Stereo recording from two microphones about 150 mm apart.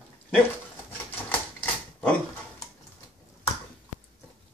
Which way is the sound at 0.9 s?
10° left (ahead or behind).